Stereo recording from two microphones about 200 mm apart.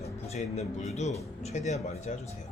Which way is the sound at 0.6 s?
Centre (ahead or behind).